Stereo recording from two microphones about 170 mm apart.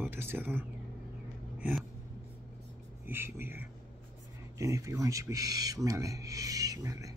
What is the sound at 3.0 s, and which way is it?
Speech, 15° right (ahead or behind).